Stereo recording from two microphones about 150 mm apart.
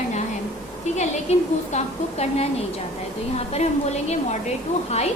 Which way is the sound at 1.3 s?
45° left (ahead or behind).